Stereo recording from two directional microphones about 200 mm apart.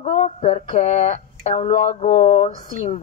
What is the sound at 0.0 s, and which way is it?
Speech, 35° left (ahead or behind).